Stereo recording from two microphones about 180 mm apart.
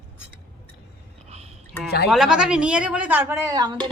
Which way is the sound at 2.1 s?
5° right (ahead or behind).